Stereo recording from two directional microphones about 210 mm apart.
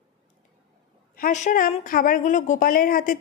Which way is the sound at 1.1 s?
40° left (ahead or behind).